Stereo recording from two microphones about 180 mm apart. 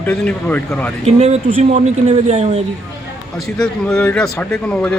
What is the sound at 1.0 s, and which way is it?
Speech, 40° right (ahead or behind).